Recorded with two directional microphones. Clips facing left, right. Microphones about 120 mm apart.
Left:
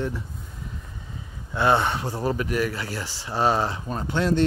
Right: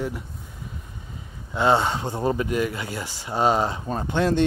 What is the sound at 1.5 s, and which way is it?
Speech, 20° right (ahead or behind).